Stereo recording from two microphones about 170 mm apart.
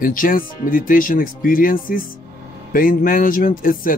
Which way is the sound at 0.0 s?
55° left (ahead or behind).